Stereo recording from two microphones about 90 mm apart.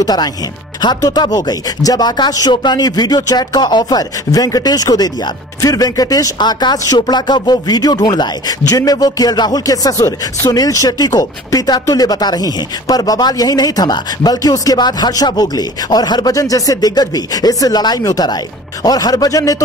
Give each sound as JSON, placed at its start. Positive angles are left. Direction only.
{"t": 0.0, "sound": "speech", "side_deg": 50}